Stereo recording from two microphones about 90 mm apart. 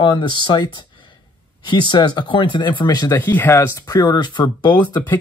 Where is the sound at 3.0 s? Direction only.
25° left (ahead or behind).